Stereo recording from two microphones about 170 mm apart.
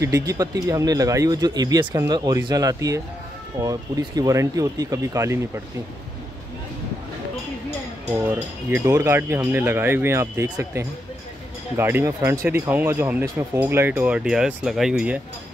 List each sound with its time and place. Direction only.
0.0 s speech: 20° right (ahead or behind)
8.1 s speech: 15° right (ahead or behind)